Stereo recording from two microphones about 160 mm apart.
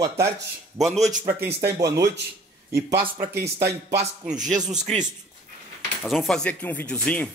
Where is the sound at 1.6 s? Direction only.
20° right (ahead or behind).